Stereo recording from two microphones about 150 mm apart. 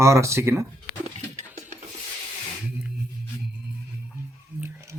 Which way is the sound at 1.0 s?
50° right (ahead or behind).